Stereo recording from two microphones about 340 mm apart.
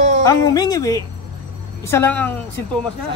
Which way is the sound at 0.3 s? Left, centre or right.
Centre.